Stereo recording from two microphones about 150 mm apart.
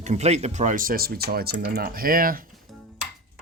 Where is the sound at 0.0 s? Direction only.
50° right (ahead or behind); by 2.5 s 70° right (ahead or behind).